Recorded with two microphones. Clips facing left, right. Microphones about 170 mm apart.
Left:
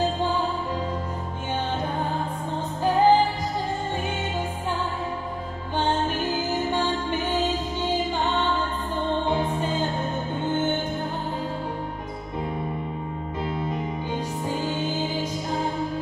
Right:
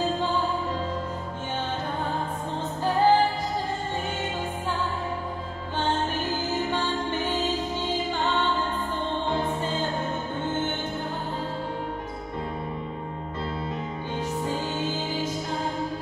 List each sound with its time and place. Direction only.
2.8 s music: 15° left (ahead or behind)
6.3 s music: 15° left (ahead or behind)
9.6 s music: 15° left (ahead or behind)